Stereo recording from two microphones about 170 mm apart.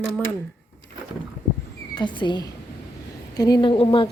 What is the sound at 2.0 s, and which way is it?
A woman's voice, 25° left (ahead or behind).